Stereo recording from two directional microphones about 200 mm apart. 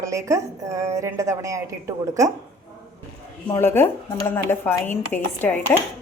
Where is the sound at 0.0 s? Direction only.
15° right (ahead or behind).